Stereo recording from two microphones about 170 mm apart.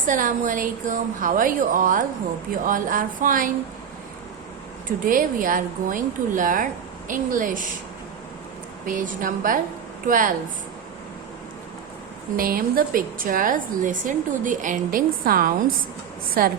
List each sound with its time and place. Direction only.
0.0 s a woman's voice: 50° right (ahead or behind)
5.0 s a woman's voice: 55° right (ahead or behind)
8.9 s a woman's voice: 50° right (ahead or behind)
12.4 s a woman's voice: 60° right (ahead or behind)